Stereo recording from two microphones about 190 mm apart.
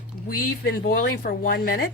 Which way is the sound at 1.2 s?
50° left (ahead or behind).